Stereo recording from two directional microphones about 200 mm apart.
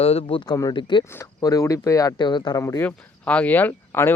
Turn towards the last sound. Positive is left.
turn(degrees=10)  # may be behind; listen again after turning